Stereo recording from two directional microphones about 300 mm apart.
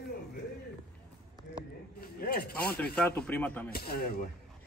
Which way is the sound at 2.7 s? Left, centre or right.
Centre.